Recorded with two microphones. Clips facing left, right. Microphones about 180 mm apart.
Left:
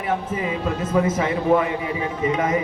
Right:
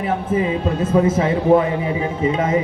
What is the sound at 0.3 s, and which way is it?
A man's voice, 30° right (ahead or behind).